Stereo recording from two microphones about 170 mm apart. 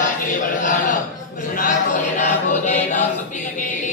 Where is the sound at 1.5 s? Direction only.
50° left (ahead or behind).